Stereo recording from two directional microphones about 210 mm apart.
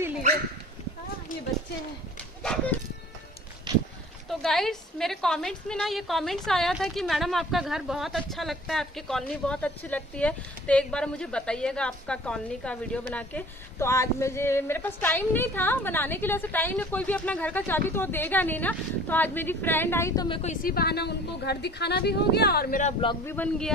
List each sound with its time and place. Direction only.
2.4 s a woman's voice: 5° left (ahead or behind)
3.7 s a sound: 20° right (ahead or behind)
4.3 s a woman's voice: centre (ahead or behind)
20.2 s a woman's voice: 25° left (ahead or behind)
20.6 s speech: 50° left (ahead or behind)
23.2 s a woman's voice: 10° left (ahead or behind)